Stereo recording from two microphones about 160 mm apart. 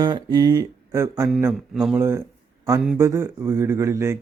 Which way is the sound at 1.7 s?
5° right (ahead or behind).